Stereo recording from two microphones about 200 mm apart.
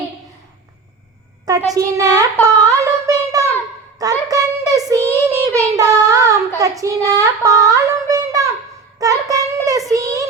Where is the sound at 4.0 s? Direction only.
20° right (ahead or behind).